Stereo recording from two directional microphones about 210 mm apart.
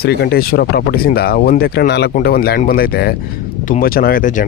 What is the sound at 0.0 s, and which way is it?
Speech, 50° left (ahead or behind).